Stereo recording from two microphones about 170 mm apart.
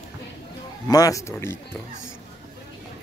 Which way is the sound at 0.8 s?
20° left (ahead or behind).